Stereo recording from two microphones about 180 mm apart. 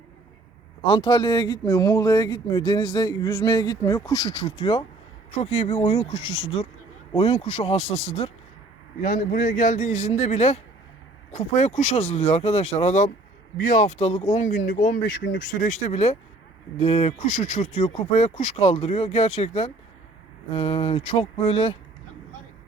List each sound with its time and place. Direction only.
0.9 s speech: 25° left (ahead or behind)
9.0 s speech: 50° left (ahead or behind); by 21.8 s 30° left (ahead or behind)